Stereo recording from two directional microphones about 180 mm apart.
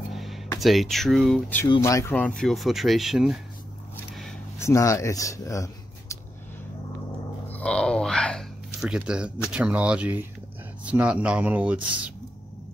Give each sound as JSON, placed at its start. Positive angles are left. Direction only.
{"t": 0.1, "sound": "music", "side_deg": 0}
{"t": 0.6, "sound": "speech", "side_deg": 0}
{"t": 1.8, "sound": "speech", "side_deg": 15}
{"t": 4.1, "sound": "a sound", "side_deg": 0}
{"t": 4.6, "sound": "speech", "side_deg": 15}
{"t": 7.4, "sound": "a sound", "side_deg": 5}
{"t": 9.5, "sound": "speech", "side_deg": -5}